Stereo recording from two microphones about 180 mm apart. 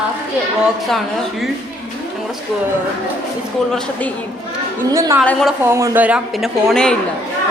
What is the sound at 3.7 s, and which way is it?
Speech, 5° left (ahead or behind).